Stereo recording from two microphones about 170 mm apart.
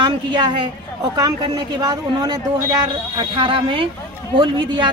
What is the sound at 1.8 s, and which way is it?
Speech, 25° right (ahead or behind).